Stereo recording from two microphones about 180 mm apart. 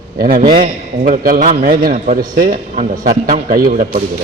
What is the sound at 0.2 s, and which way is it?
A man's voice, 55° right (ahead or behind).